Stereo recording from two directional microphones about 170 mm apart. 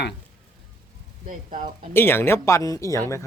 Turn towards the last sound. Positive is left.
turn(degrees=15)  # may be behind; listen again after turning